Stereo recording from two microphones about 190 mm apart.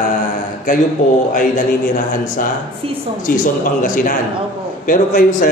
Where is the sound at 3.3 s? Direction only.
50° left (ahead or behind).